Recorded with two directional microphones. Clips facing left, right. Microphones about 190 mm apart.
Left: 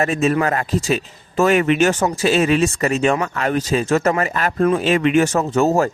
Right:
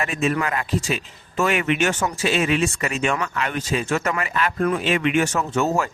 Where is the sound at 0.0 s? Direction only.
40° left (ahead or behind).